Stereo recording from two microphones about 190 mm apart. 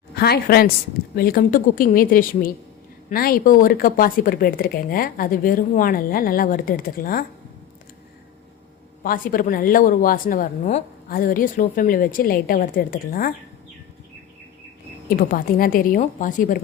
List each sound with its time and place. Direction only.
0.1 s a woman's voice: 55° left (ahead or behind)
9.0 s speech: 50° left (ahead or behind)
15.1 s speech: 50° left (ahead or behind)